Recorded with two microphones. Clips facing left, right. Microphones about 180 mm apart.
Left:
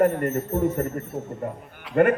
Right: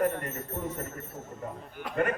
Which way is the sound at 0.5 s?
75° left (ahead or behind).